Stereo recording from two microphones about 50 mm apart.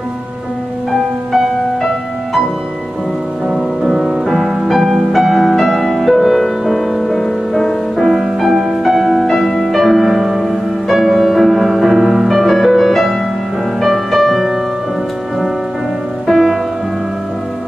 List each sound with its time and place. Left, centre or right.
3.4 s music: centre
16.3 s music: centre